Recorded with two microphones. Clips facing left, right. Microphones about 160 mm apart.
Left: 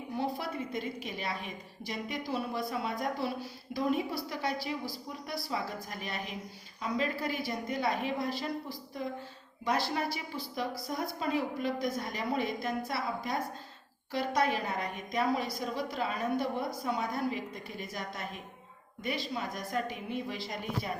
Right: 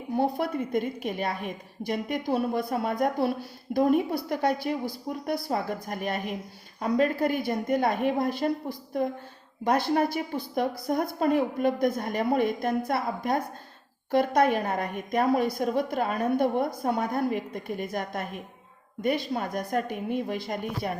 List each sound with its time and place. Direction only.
0.2 s a woman's voice: 50° right (ahead or behind)